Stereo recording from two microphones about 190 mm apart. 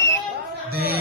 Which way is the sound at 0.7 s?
55° right (ahead or behind).